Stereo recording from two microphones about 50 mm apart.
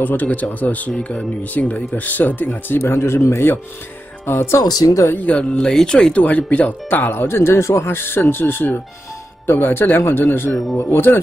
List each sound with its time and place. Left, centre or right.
0.0 s speech: left
2.9 s speech: left
5.1 s speech: left; by 6.1 s centre
6.1 s speech: left
6.9 s speech: left
7.9 s speech: left
10.5 s speech: centre
10.9 s speech: left